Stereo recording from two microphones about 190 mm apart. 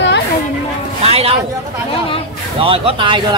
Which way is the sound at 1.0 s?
30° right (ahead or behind).